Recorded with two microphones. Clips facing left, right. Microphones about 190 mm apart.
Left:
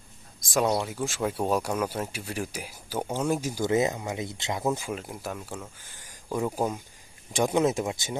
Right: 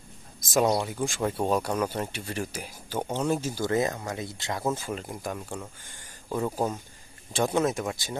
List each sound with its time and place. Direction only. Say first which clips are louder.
0.5 s speech: right 1 dB; centre (ahead or behind)
4.9 s speech: right 1 dB; centre (ahead or behind)
7.5 s speech: left 3 dB; 20° left (ahead or behind)